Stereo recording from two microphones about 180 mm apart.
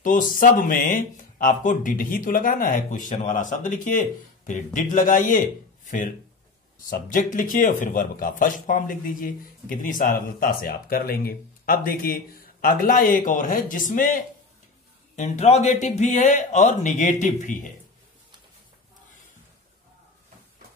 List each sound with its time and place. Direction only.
0.0 s speech: 50° left (ahead or behind)